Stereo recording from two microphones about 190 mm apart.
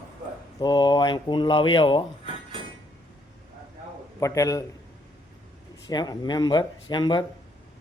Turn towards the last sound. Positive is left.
turn(degrees=25)  # may be behind; listen again after turning